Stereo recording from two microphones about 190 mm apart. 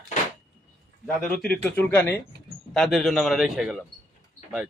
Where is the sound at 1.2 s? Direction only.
5° left (ahead or behind).